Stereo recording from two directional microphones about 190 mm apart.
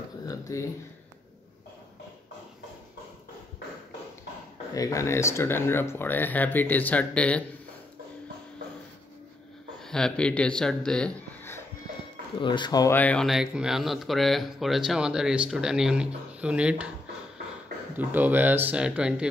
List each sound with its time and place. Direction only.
0.3 s a sound: 15° left (ahead or behind)
4.7 s speech: 15° left (ahead or behind)
9.8 s speech: 5° left (ahead or behind)
12.4 s speech: 25° left (ahead or behind); by 16.9 s 5° right (ahead or behind)
17.9 s speech: 10° right (ahead or behind)